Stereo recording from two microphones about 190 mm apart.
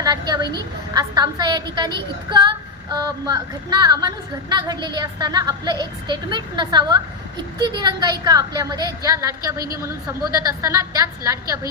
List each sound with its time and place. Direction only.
0.0 s a woman's voice: 20° right (ahead or behind)